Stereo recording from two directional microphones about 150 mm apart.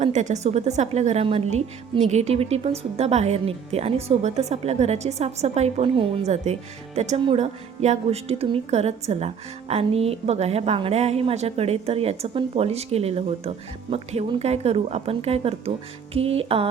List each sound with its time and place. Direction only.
0.0 s a woman's voice: 50° right (ahead or behind)